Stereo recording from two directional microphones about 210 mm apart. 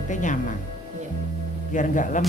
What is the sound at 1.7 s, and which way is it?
Speech, 35° left (ahead or behind).